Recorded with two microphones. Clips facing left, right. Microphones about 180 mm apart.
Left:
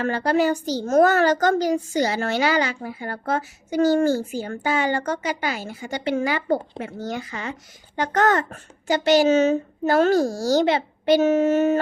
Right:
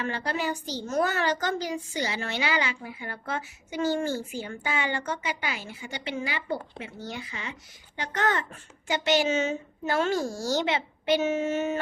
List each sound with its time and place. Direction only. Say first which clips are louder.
0.0 s a woman's voice: left 10 dB; 40° left (ahead or behind)